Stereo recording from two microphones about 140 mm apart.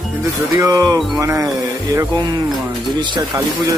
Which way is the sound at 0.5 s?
25° right (ahead or behind).